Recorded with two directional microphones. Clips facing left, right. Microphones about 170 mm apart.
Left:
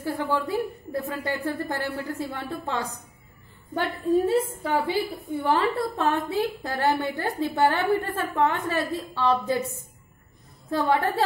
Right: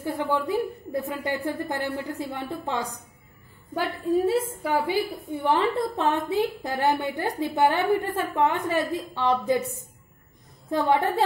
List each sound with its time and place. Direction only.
0.0 s a woman's voice: 15° right (ahead or behind)
3.7 s a woman's voice: 5° right (ahead or behind)
10.7 s a woman's voice: 15° right (ahead or behind)